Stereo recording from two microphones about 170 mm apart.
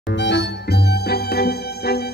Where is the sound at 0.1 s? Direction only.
90° left.